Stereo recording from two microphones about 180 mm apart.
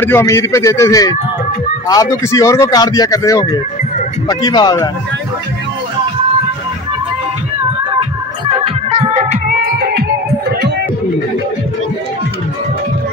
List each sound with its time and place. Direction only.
0.0 s a man's voice: 15° left (ahead or behind)
8.5 s music: 30° right (ahead or behind)
9.8 s music: 60° right (ahead or behind)